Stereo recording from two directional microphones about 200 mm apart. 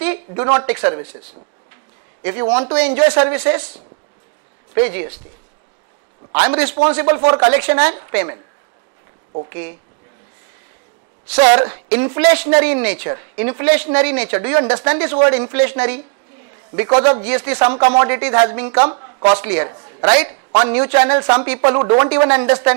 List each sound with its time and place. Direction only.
0.0 s a sound: 10° right (ahead or behind)
0.5 s speech: 15° right (ahead or behind)
2.2 s speech: 10° right (ahead or behind)
6.3 s speech: 10° right (ahead or behind)
9.5 s speech: 15° right (ahead or behind)
11.2 s speech: 10° right (ahead or behind)
17.1 s speech: 10° right (ahead or behind)
18.9 s a sound: 20° right (ahead or behind)
19.3 s a man's voice: 10° right (ahead or behind)